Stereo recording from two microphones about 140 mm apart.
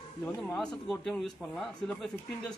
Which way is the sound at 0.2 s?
5° left (ahead or behind).